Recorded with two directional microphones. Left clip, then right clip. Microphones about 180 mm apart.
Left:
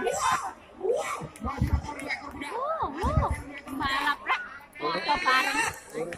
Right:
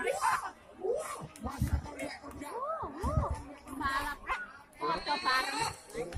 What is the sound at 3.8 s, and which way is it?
Bow-wow, 25° left (ahead or behind).